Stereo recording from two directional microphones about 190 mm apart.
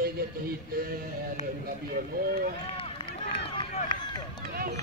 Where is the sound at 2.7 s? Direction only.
30° left (ahead or behind).